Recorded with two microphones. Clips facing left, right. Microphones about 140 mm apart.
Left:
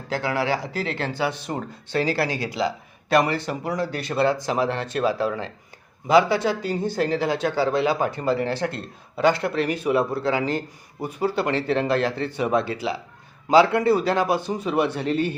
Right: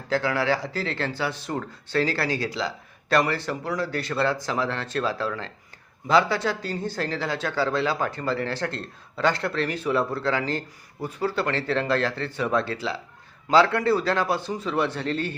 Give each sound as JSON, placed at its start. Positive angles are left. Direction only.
{"t": 0.1, "sound": "speech", "side_deg": 15}